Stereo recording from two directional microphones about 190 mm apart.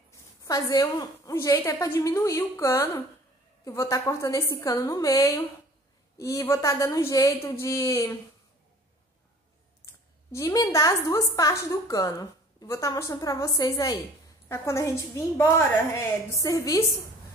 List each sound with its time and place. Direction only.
0.1 s a woman's voice: 20° left (ahead or behind)
10.3 s a woman's voice: 15° left (ahead or behind)